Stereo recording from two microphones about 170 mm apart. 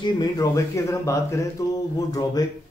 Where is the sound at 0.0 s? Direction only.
20° left (ahead or behind).